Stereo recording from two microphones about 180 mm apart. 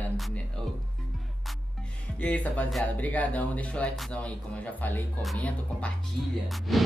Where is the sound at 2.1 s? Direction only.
10° left (ahead or behind).